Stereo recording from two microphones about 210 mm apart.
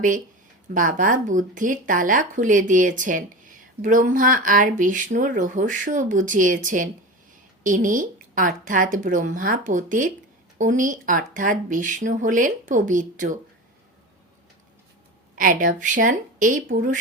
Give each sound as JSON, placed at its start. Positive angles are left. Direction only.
{"t": 0.7, "sound": "speech", "side_deg": -40}
{"t": 15.4, "sound": "speech", "side_deg": -40}